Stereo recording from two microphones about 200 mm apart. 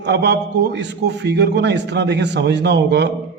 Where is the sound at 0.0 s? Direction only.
55° right (ahead or behind).